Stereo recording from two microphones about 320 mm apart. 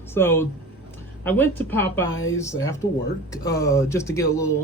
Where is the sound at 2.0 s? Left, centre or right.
Left.